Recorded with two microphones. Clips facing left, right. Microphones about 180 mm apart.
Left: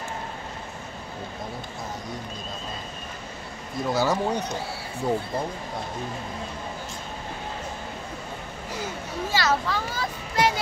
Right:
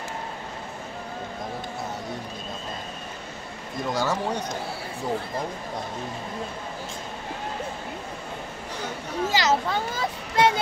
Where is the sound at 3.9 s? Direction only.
10° left (ahead or behind).